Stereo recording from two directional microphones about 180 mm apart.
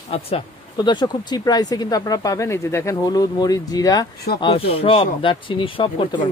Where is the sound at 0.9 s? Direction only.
25° left (ahead or behind).